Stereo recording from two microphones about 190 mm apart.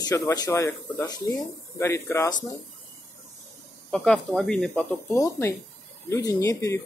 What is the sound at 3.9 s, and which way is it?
Speech, 5° left (ahead or behind).